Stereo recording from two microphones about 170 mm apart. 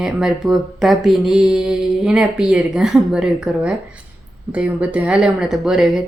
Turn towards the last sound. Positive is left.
turn(degrees=-5)  # may be behind; listen again after turning